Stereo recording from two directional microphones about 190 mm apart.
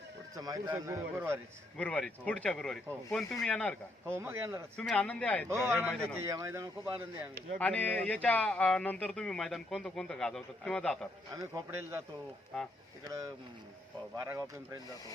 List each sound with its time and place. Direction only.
0.3 s speech: 20° right (ahead or behind)
1.8 s speech: 5° left (ahead or behind)
4.2 s speech: 15° right (ahead or behind)
4.8 s speech: 5° left (ahead or behind)
5.5 s speech: 15° right (ahead or behind)
5.9 s speech: 5° left (ahead or behind)
6.1 s speech: 15° right (ahead or behind)
7.6 s speech: 10° left (ahead or behind)
11.3 s speech: 15° right (ahead or behind)
12.5 s speech: centre (ahead or behind)
13.1 s speech: 15° right (ahead or behind)